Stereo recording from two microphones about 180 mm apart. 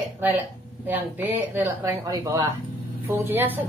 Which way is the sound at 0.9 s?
10° right (ahead or behind).